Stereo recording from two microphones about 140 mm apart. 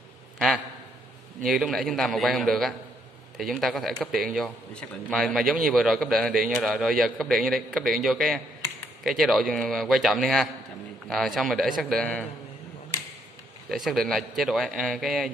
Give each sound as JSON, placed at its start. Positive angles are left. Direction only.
{"t": 1.4, "sound": "a man's voice", "side_deg": 0}
{"t": 13.7, "sound": "a man's voice", "side_deg": 0}